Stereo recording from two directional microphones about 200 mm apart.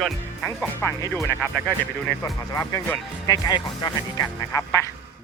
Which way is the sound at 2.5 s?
15° left (ahead or behind).